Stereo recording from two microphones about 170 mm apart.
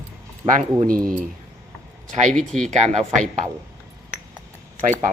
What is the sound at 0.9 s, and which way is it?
Speech, 55° right (ahead or behind).